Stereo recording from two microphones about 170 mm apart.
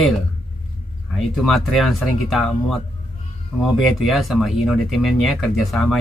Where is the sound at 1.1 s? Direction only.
Centre (ahead or behind).